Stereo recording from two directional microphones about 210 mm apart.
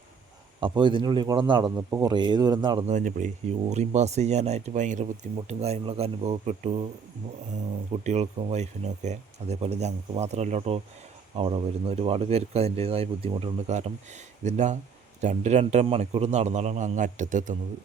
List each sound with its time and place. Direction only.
0.6 s speech: 25° right (ahead or behind)
2.9 s speech: 40° right (ahead or behind)
8.0 s speech: 30° right (ahead or behind)